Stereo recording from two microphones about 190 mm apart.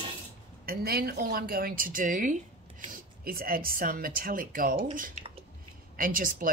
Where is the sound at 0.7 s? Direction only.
55° right (ahead or behind).